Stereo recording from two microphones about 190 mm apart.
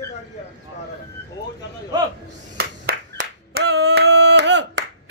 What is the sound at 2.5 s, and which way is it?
Clapping, 60° right (ahead or behind).